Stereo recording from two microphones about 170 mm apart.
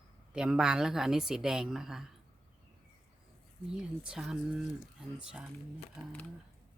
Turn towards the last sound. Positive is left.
turn(degrees=-5)  # may be behind; listen again after turning